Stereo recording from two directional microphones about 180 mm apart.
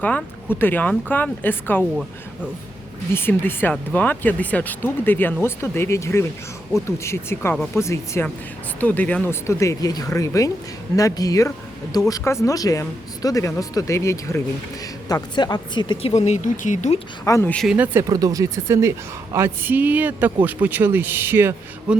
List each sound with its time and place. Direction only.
0.6 s speech: 10° left (ahead or behind)
3.2 s speech: 10° left (ahead or behind); by 17.0 s 40° left (ahead or behind)
17.2 s speech: 15° left (ahead or behind)
17.7 s speech: 15° right (ahead or behind)